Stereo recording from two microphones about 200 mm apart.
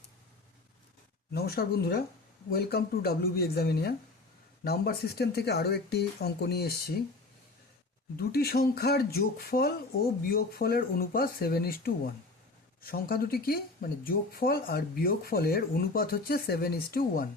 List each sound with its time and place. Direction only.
1.3 s speech: 50° left (ahead or behind)
8.1 s speech: 50° left (ahead or behind)